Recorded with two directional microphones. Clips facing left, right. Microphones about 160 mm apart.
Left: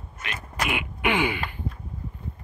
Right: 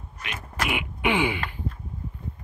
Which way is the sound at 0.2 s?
15° right (ahead or behind).